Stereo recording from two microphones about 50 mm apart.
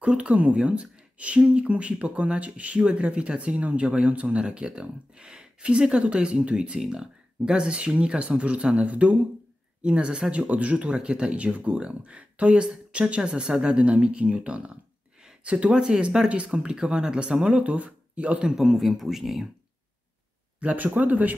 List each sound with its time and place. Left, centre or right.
0.0 s speech: right
18.4 s speech: centre
20.6 s speech: right